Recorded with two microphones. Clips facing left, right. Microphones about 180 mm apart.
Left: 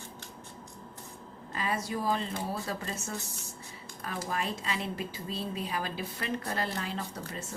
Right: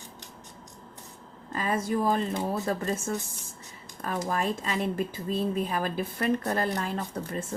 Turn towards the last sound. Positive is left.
turn(degrees=-55)  # may be behind; listen again after turning